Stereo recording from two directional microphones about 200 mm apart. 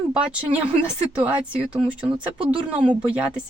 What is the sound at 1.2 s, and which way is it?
Speech, 5° right (ahead or behind).